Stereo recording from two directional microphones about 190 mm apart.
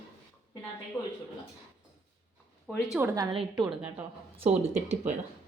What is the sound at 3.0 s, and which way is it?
Speech, 20° right (ahead or behind).